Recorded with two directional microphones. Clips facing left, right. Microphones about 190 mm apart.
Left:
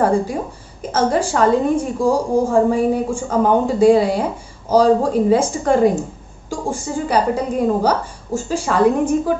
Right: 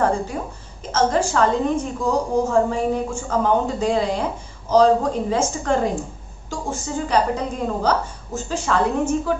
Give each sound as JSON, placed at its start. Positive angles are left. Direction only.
{"t": 0.0, "sound": "speech", "side_deg": 10}
{"t": 2.0, "sound": "speech", "side_deg": 30}
{"t": 2.5, "sound": "speech", "side_deg": 10}